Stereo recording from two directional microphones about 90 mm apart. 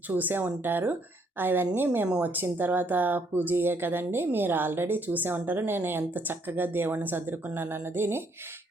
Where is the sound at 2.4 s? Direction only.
20° right (ahead or behind).